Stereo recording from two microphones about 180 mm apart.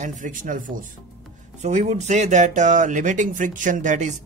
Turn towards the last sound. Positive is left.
turn(degrees=-40)  # may be behind; listen again after turning